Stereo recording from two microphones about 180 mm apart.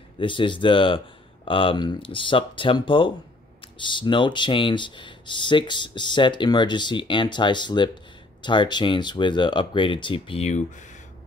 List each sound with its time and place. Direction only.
0.2 s speech: 25° left (ahead or behind)